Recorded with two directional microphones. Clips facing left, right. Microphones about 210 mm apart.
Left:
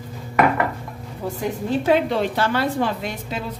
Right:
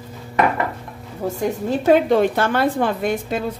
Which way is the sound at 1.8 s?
45° right (ahead or behind).